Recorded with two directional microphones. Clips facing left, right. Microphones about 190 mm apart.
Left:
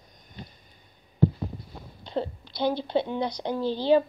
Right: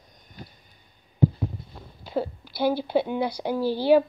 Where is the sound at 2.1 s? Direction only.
5° right (ahead or behind).